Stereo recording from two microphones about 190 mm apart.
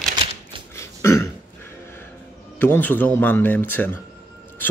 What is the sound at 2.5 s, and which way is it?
A man's voice, 10° left (ahead or behind).